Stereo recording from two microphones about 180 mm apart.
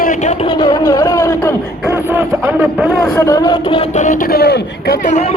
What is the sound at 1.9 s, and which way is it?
Speech, 10° right (ahead or behind).